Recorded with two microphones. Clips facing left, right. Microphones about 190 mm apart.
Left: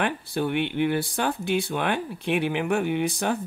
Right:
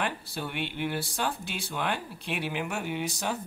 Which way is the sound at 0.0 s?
55° left (ahead or behind).